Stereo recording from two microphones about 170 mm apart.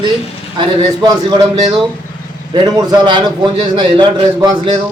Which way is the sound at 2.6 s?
20° right (ahead or behind).